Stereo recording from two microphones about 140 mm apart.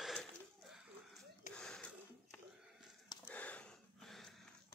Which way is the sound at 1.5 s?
5° left (ahead or behind).